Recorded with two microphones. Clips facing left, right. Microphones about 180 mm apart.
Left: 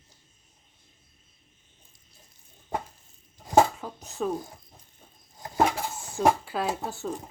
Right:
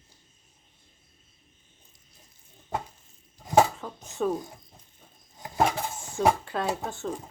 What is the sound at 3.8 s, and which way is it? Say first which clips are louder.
Speech: right 2 dB; 10° left (ahead or behind).